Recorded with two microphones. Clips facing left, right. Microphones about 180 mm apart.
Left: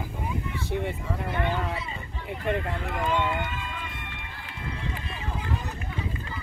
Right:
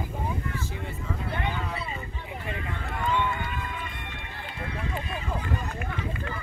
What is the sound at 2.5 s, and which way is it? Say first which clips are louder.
Speech: left 10 dB; 65° left (ahead or behind).